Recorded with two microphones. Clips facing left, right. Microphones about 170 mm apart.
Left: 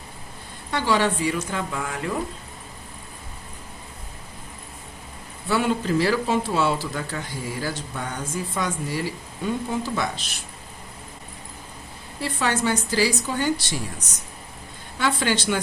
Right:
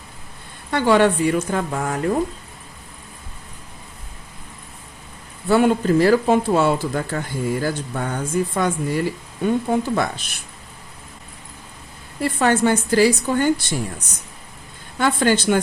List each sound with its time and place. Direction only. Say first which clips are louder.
0.7 s speech: right 6 dB; 55° right (ahead or behind)
5.5 s a woman's voice: right 6 dB; 50° right (ahead or behind)
12.2 s speech: right 6 dB; 50° right (ahead or behind)
14.9 s speech: right 5 dB; 50° right (ahead or behind)